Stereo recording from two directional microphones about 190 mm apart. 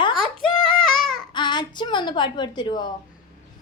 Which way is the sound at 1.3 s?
25° left (ahead or behind).